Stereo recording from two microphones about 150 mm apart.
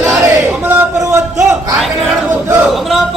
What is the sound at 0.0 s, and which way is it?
Battle cry, 5° right (ahead or behind).